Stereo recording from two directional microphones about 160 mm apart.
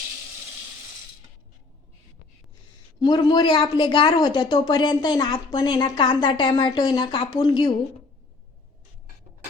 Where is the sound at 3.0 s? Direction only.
25° left (ahead or behind).